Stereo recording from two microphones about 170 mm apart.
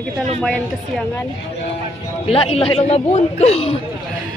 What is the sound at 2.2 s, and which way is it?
A man's voice, 35° left (ahead or behind).